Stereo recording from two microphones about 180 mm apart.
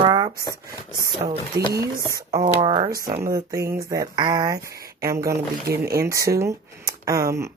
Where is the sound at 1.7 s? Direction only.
20° right (ahead or behind).